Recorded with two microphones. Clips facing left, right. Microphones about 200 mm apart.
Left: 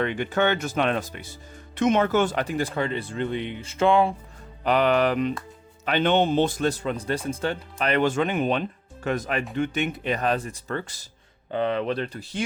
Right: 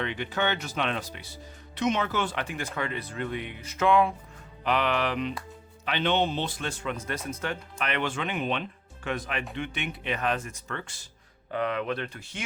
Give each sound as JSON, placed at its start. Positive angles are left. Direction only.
{"t": 0.0, "sound": "speech", "side_deg": 50}
{"t": 4.6, "sound": "speech", "side_deg": 40}